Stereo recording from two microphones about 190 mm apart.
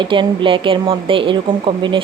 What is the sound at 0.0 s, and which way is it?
A woman's voice, 25° right (ahead or behind).